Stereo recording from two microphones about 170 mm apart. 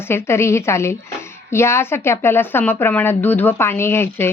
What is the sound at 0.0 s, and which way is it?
Speech, 15° left (ahead or behind).